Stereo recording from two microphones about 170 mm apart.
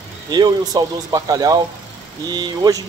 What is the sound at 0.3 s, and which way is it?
Speech, 25° right (ahead or behind).